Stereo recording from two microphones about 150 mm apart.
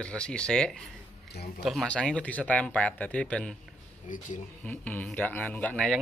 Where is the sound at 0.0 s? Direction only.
5° left (ahead or behind).